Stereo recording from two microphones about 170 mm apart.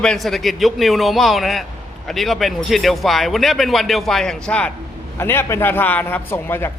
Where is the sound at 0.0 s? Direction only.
5° left (ahead or behind).